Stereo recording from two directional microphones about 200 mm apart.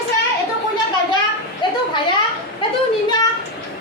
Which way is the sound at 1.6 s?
25° left (ahead or behind).